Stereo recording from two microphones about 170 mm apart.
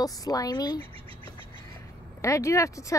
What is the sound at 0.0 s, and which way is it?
Speech, 20° left (ahead or behind).